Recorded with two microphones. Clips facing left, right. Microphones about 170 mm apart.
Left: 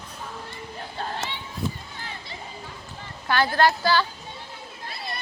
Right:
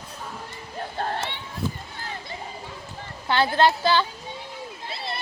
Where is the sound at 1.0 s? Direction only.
55° right (ahead or behind).